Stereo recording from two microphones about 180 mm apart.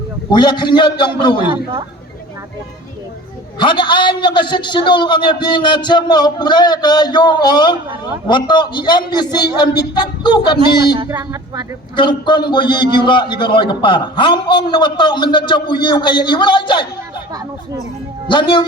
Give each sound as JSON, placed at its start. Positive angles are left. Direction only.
{"t": 0.3, "sound": "a man's voice", "side_deg": 25}
{"t": 3.6, "sound": "a man's voice", "side_deg": 25}
{"t": 11.1, "sound": "speech", "side_deg": -20}
{"t": 11.9, "sound": "a man's voice", "side_deg": 25}
{"t": 17.3, "sound": "speech", "side_deg": -20}
{"t": 18.3, "sound": "a man's voice", "side_deg": 25}